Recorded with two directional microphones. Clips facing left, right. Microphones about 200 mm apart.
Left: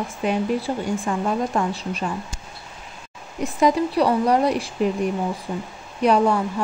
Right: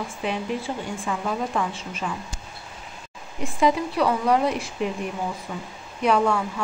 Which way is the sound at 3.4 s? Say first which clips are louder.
Left 3 dB; 35° left (ahead or behind).